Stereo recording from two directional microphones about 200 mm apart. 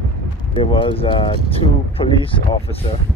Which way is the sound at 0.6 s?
25° left (ahead or behind).